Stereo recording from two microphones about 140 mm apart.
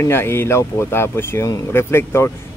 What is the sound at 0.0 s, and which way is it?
Speech, 15° left (ahead or behind).